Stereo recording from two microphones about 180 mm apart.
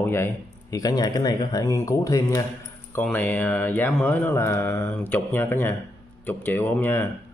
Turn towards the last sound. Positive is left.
turn(degrees=10)  # may be behind; listen again after turning